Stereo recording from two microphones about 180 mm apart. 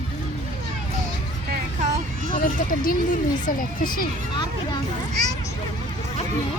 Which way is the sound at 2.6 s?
55° left (ahead or behind).